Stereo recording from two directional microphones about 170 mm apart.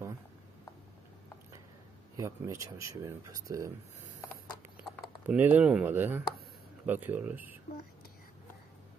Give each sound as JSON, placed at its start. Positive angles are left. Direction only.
{"t": 2.1, "sound": "speech", "side_deg": -20}
{"t": 5.2, "sound": "speech", "side_deg": -10}